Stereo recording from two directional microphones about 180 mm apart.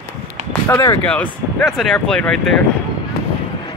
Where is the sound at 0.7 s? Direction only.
15° left (ahead or behind).